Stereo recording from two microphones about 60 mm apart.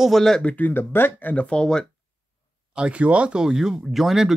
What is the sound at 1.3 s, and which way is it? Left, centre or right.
Speech, left.